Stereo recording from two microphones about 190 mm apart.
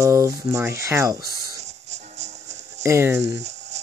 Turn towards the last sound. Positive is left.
turn(degrees=-35)  # may be behind; listen again after turning